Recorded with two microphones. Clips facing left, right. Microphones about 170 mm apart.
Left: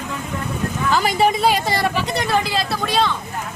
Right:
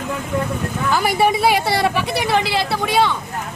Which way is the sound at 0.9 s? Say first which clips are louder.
Right 1 dB; 5° right (ahead or behind).